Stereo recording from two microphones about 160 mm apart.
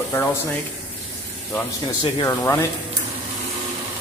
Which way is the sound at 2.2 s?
20° left (ahead or behind).